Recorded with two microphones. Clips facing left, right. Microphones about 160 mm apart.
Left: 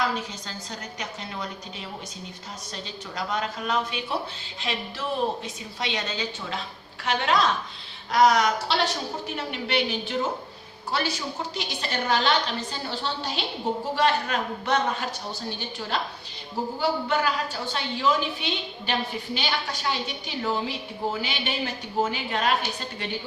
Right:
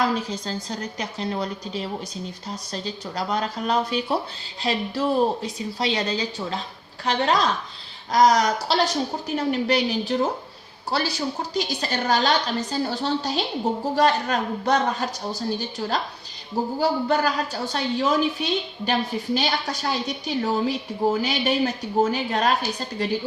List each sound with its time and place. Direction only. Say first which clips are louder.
0.3 s a woman's voice: right 8 dB; 35° right (ahead or behind)
2.8 s a woman's voice: right 3 dB; 35° right (ahead or behind)
11.5 s a woman's voice: right 5 dB; 40° right (ahead or behind)